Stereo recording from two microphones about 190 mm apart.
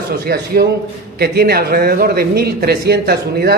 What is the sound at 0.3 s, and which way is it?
A man's voice, 50° right (ahead or behind).